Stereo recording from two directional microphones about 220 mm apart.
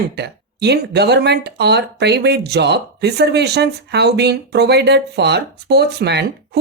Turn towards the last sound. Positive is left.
turn(degrees=-50)  # may be behind; listen again after turning